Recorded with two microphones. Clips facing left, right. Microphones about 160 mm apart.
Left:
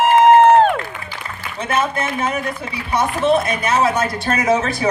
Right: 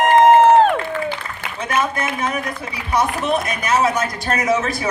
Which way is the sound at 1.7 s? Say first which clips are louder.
Left 1 dB; 30° left (ahead or behind).